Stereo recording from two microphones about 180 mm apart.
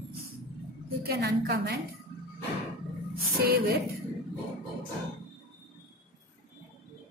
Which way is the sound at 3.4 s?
55° right (ahead or behind).